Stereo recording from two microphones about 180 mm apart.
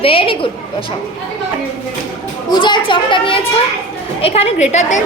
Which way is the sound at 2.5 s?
25° left (ahead or behind).